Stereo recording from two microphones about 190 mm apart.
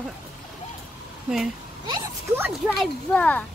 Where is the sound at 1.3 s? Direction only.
5° right (ahead or behind).